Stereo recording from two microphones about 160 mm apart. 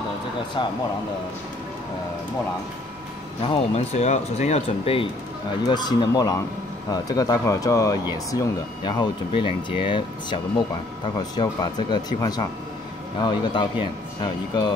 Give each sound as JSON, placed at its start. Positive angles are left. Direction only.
{"t": 0.6, "sound": "a man's voice", "side_deg": 30}
{"t": 3.4, "sound": "a man's voice", "side_deg": 40}